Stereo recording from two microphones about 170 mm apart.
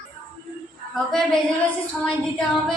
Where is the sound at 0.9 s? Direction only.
Centre (ahead or behind).